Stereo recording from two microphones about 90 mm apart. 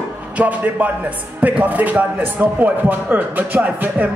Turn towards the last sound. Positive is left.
turn(degrees=-15)  # may be behind; listen again after turning